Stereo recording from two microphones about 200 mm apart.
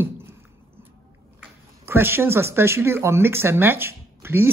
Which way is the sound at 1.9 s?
10° right (ahead or behind).